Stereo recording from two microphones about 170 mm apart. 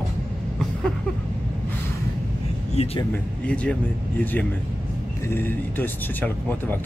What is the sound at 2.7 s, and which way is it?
Speech, 35° left (ahead or behind).